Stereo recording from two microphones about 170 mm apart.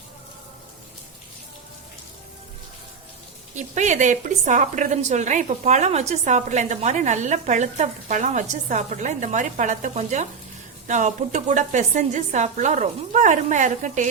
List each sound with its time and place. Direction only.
3.5 s a woman's voice: 45° right (ahead or behind)